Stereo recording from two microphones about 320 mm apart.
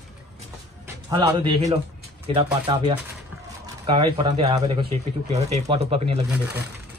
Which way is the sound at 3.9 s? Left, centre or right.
Centre.